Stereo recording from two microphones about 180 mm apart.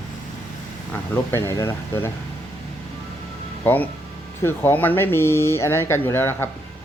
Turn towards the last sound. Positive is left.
turn(degrees=15)  # may be behind; listen again after turning